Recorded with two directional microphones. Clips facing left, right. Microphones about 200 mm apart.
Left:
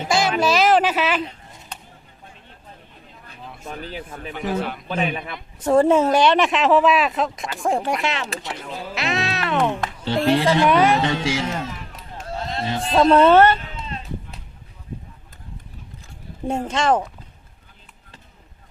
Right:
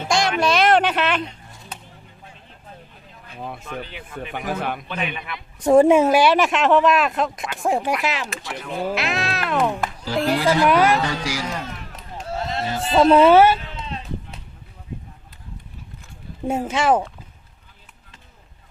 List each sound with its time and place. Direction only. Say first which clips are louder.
0.0 s a sound: left 1 dB; 5° left (ahead or behind)
3.7 s speech: left 1 dB; 40° left (ahead or behind)
4.3 s a man's voice: left 2 dB; 50° right (ahead or behind)
4.9 s speech: left 4 dB; 40° left (ahead or behind)
5.6 s speech: right 2 dB; 15° right (ahead or behind)
9.0 s cat: even; centre (ahead or behind)
10.2 s speech: left 1 dB; centre (ahead or behind)
11.0 s speech: left 3 dB; 25° left (ahead or behind)
11.6 s a sound: left 2 dB; centre (ahead or behind)
16.5 s speech: right 1 dB; 5° right (ahead or behind)